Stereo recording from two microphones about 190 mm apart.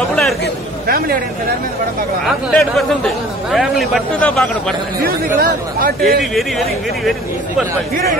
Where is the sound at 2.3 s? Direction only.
Centre (ahead or behind).